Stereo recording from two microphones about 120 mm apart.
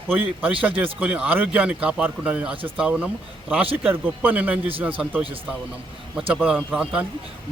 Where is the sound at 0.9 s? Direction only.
10° right (ahead or behind).